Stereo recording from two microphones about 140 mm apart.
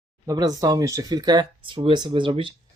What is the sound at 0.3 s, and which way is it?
Speech, 25° right (ahead or behind).